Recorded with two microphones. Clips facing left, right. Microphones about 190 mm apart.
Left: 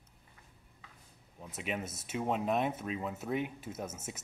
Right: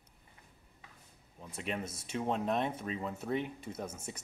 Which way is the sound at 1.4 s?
5° left (ahead or behind).